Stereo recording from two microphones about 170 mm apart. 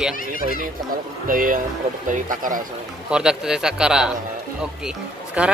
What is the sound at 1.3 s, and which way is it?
Speech, 55° right (ahead or behind).